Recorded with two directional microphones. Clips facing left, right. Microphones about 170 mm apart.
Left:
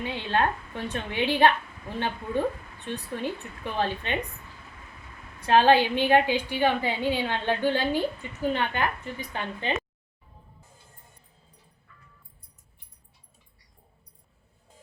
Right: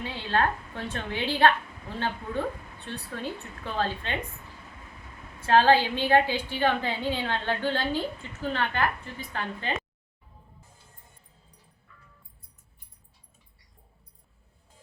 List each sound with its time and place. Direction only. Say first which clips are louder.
0.0 s a woman's voice: left 1 dB; 15° left (ahead or behind)
2.8 s a woman's voice: left 4 dB; 15° left (ahead or behind)
5.4 s a woman's voice: left 1 dB; 15° left (ahead or behind)